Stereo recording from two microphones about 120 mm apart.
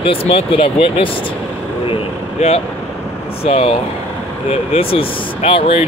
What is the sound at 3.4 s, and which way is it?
Speech, 55° left (ahead or behind).